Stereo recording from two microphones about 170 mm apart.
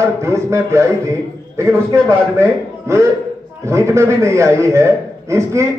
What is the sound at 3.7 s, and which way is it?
A man's voice, 15° right (ahead or behind).